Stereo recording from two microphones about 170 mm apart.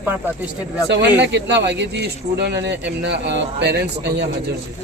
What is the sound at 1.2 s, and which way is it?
Speech, 85° right.